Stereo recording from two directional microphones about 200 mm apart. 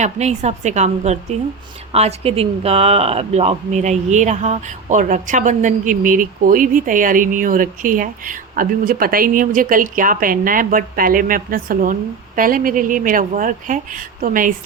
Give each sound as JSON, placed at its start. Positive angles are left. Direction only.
{"t": 0.0, "sound": "a woman's voice", "side_deg": -35}